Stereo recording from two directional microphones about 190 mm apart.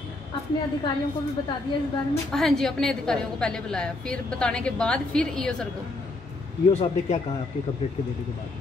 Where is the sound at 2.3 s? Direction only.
Centre (ahead or behind).